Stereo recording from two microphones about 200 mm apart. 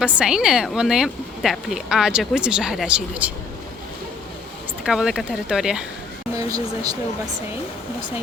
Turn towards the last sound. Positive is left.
turn(degrees=-20)  # may be behind; listen again after turning